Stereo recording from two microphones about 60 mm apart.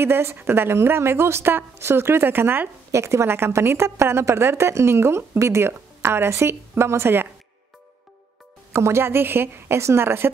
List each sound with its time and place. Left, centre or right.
0.0 s a woman's voice: right
2.9 s a woman's voice: right
8.7 s a woman's voice: right